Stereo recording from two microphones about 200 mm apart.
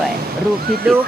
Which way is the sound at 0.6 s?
50° right (ahead or behind).